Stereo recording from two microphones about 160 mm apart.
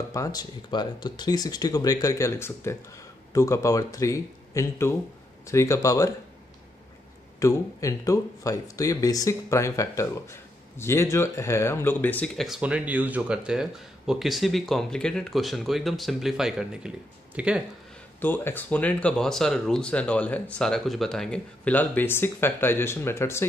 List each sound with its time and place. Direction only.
0.1 s speech: 20° left (ahead or behind)
7.3 s speech: 20° left (ahead or behind)
12.4 s speech: 5° right (ahead or behind)
18.2 s speech: 15° left (ahead or behind)